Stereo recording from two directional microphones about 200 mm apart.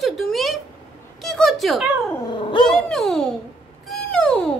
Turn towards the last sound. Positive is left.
turn(degrees=5)  # may be behind; listen again after turning